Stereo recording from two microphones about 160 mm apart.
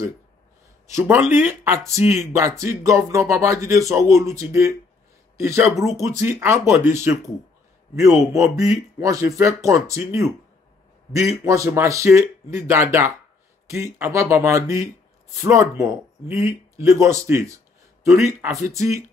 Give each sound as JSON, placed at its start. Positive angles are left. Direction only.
{"t": 0.9, "sound": "speech", "side_deg": -15}
{"t": 5.7, "sound": "speech", "side_deg": 0}
{"t": 5.9, "sound": "speech", "side_deg": -20}
{"t": 8.3, "sound": "speech", "side_deg": -20}